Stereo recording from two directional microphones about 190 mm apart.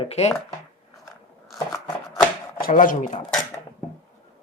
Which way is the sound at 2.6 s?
45° left (ahead or behind).